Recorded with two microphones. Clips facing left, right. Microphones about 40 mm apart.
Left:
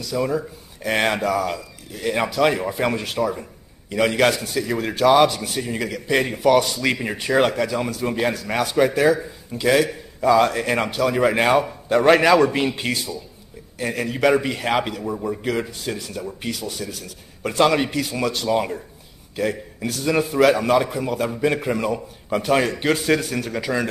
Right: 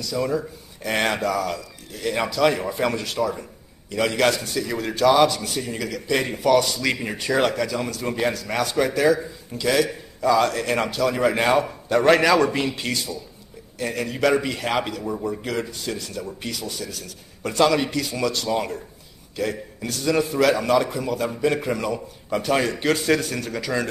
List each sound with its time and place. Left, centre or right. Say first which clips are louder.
0.1 s a man's voice: left 2 dB; centre
12.6 s speech: left 3 dB; left
13.7 s a man's voice: left 1 dB; centre